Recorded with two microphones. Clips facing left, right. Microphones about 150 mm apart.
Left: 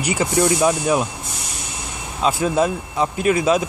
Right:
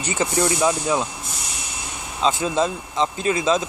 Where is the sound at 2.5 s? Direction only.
10° left (ahead or behind).